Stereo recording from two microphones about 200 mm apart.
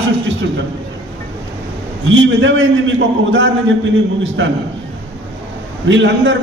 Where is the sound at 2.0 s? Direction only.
70° right (ahead or behind).